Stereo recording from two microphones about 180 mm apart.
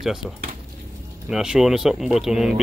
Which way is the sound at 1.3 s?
5° right (ahead or behind).